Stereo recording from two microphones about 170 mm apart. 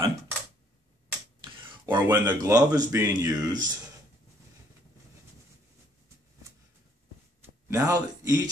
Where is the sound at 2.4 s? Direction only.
20° right (ahead or behind).